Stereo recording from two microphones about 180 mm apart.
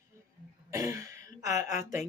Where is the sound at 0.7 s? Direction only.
15° right (ahead or behind).